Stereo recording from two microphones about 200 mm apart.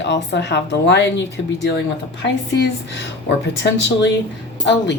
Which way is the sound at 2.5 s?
60° left (ahead or behind).